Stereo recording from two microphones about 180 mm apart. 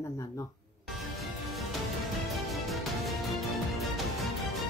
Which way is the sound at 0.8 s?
Centre (ahead or behind).